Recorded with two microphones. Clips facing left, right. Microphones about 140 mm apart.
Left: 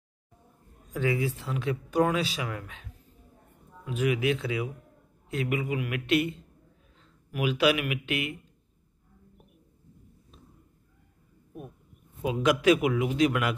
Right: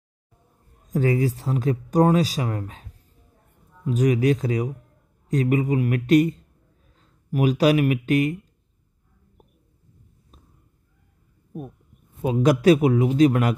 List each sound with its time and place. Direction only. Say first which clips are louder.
0.8 s speech: right 6 dB; 40° right (ahead or behind)
12.2 s speech: right 6 dB; 40° right (ahead or behind)